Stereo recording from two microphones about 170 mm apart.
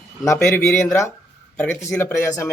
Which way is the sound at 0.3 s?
15° left (ahead or behind).